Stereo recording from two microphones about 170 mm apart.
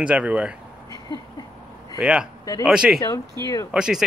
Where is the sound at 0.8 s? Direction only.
20° left (ahead or behind).